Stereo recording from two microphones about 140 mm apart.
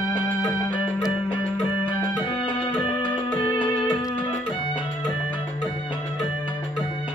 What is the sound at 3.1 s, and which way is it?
Music, 25° left (ahead or behind).